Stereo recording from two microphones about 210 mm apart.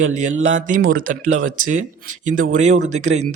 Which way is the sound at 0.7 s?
40° right (ahead or behind).